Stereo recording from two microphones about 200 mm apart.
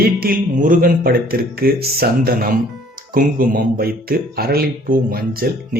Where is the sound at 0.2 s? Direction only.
45° right (ahead or behind).